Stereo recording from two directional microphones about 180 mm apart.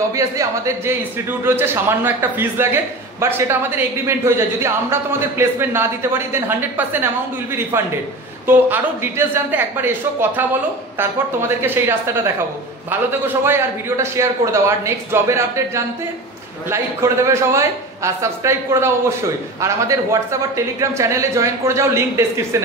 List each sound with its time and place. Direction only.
0.1 s a man's voice: 15° right (ahead or behind)
13.4 s a man's voice: 15° right (ahead or behind)